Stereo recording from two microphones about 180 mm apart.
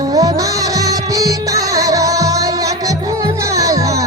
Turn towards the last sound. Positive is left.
turn(degrees=-20)  # may be behind; listen again after turning